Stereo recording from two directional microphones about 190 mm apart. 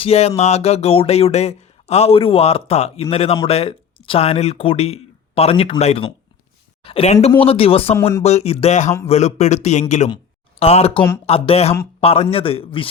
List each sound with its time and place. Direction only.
0.0 s speech: 30° left (ahead or behind)